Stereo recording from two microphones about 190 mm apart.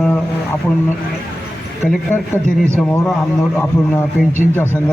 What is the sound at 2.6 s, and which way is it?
Speech, 5° left (ahead or behind).